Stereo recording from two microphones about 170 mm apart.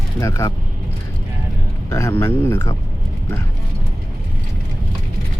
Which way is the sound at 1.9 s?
20° left (ahead or behind).